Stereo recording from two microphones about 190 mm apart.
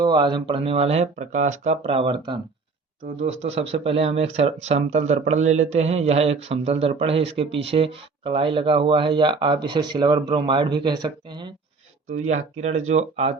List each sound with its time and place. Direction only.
0.0 s speech: 25° right (ahead or behind)
3.0 s speech: 35° right (ahead or behind)
12.3 s speech: 35° right (ahead or behind)